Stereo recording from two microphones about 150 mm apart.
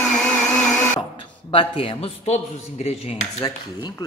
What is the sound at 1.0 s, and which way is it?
A man's voice, 35° left (ahead or behind).